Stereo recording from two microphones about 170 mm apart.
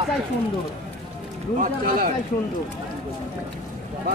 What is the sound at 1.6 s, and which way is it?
Speech, 55° right (ahead or behind).